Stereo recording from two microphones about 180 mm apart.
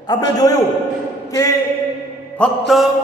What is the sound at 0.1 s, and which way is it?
Speech, 20° left (ahead or behind).